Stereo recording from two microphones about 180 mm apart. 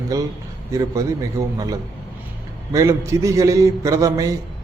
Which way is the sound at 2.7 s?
15° right (ahead or behind).